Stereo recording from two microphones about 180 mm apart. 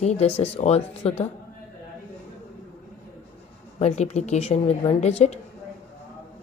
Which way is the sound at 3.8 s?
40° left (ahead or behind).